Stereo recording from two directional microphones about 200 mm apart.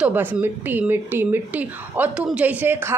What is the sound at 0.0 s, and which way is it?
A woman's voice, 10° right (ahead or behind).